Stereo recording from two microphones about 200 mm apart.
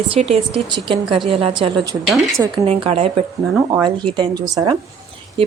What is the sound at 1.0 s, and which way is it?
Speech, centre (ahead or behind).